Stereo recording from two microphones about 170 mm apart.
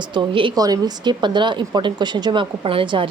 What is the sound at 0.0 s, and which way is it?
A woman's voice, 25° right (ahead or behind).